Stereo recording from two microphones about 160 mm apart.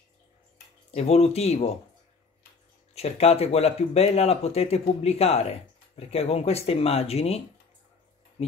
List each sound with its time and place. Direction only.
0.9 s speech: 40° left (ahead or behind)
2.9 s speech: 40° left (ahead or behind)